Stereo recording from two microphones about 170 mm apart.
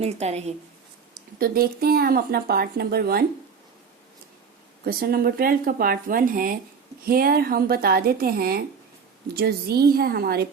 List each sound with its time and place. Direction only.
0.0 s a woman's voice: 40° right (ahead or behind)
1.4 s speech: 60° right (ahead or behind)
4.9 s speech: 60° right (ahead or behind)